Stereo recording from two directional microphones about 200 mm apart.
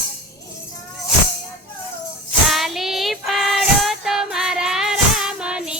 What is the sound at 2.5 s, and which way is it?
Child singing, centre (ahead or behind).